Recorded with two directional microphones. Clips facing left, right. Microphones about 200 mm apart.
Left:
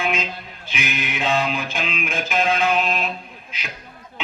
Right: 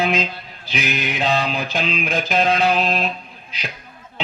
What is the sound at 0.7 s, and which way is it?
Music, 35° right (ahead or behind).